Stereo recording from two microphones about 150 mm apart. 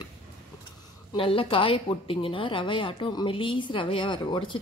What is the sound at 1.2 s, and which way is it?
A woman's voice, 35° left (ahead or behind).